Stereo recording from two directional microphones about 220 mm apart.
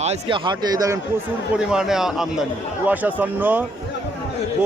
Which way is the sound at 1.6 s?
5° right (ahead or behind).